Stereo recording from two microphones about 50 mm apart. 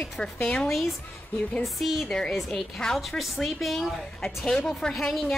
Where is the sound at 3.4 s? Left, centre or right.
Centre.